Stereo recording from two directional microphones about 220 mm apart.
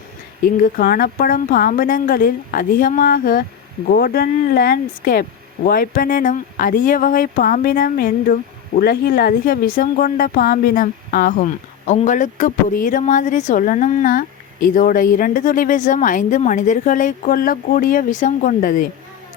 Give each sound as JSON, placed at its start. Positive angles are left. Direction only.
{"t": 0.4, "sound": "speech", "side_deg": 40}